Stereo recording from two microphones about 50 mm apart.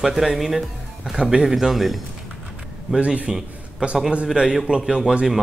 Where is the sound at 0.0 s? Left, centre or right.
Centre.